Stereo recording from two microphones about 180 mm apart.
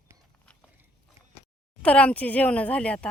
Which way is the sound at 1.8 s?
5° left (ahead or behind).